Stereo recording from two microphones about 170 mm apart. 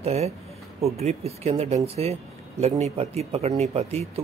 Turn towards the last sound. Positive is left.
turn(degrees=-35)  # may be behind; listen again after turning